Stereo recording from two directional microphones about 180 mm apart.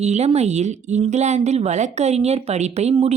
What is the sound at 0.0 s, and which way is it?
A woman's voice, 40° right (ahead or behind).